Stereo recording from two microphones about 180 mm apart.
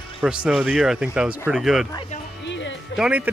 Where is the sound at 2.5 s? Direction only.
90° left.